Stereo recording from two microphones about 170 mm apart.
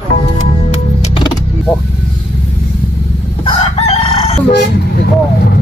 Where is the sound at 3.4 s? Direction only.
35° left (ahead or behind).